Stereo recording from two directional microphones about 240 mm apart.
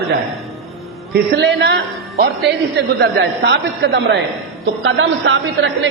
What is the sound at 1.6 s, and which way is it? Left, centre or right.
A man's voice, right.